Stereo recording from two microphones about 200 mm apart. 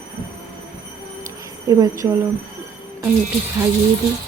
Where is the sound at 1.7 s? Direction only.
20° right (ahead or behind).